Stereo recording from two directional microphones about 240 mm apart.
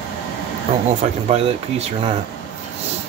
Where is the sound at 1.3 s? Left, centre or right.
Right.